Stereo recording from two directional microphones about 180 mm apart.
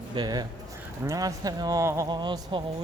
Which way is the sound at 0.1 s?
25° right (ahead or behind).